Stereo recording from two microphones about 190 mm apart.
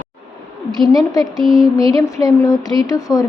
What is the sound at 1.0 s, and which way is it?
Speech, 20° left (ahead or behind).